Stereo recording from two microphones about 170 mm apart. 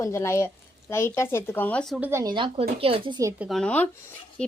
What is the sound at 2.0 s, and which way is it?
Speech, 15° right (ahead or behind).